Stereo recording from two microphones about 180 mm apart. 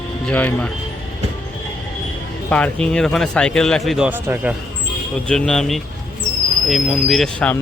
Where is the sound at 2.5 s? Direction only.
5° left (ahead or behind); by 4.5 s 10° right (ahead or behind).